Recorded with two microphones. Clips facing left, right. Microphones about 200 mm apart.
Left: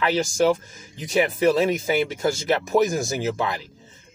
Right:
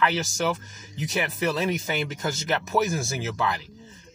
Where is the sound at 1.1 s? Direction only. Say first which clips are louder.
Left 8 dB; 10° left (ahead or behind).